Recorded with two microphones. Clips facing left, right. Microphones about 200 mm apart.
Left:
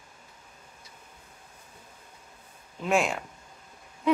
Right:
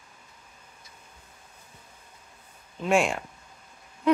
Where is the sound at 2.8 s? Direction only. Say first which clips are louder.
Right 2 dB; centre (ahead or behind).